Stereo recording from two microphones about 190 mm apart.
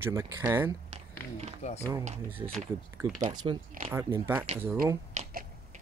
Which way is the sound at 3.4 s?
25° right (ahead or behind).